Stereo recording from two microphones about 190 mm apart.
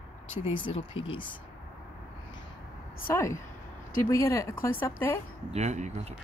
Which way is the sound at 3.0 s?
15° left (ahead or behind).